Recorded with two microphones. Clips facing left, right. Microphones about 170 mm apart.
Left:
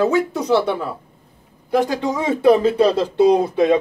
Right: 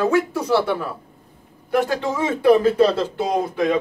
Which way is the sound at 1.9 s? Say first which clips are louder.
Left 2 dB; 15° left (ahead or behind).